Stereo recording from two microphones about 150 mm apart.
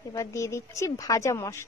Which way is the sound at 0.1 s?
20° left (ahead or behind).